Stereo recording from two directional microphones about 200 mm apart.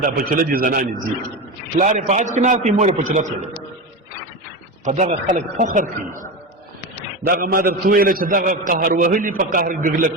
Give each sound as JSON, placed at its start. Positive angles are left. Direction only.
{"t": 0.0, "sound": "a man's voice", "side_deg": -45}
{"t": 4.9, "sound": "a man's voice", "side_deg": -35}
{"t": 7.3, "sound": "a man's voice", "side_deg": -45}